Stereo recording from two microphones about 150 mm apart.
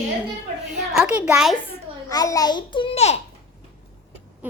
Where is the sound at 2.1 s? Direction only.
25° left (ahead or behind); by 3.2 s 45° left (ahead or behind).